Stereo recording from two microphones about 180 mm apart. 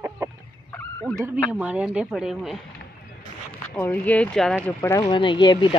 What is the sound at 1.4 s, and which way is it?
A woman's voice, 5° right (ahead or behind).